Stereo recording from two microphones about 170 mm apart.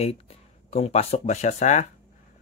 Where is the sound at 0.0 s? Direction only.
35° left (ahead or behind).